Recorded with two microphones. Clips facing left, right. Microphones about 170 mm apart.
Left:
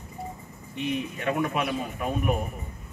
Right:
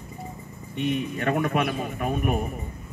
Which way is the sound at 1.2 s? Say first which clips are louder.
Right 3 dB; 50° right (ahead or behind).